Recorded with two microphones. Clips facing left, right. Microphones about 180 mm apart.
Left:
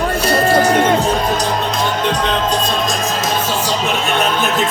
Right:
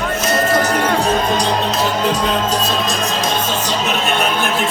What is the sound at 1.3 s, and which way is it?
Speech, centre (ahead or behind).